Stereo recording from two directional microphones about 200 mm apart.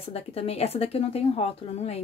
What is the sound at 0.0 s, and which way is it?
Speech, 30° left (ahead or behind).